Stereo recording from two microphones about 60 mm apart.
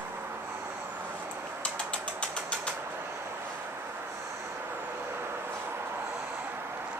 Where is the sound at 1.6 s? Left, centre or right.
Left.